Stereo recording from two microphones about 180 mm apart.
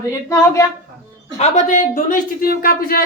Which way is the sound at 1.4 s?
40° left (ahead or behind).